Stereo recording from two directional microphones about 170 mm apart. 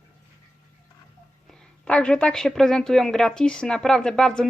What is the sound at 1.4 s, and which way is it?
Speech, 5° left (ahead or behind).